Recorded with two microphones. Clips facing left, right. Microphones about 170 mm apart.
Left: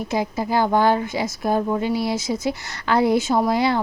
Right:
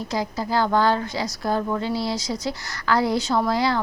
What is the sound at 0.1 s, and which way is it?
Speech, 20° left (ahead or behind).